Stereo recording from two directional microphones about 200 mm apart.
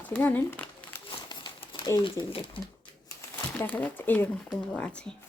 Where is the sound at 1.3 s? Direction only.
20° left (ahead or behind).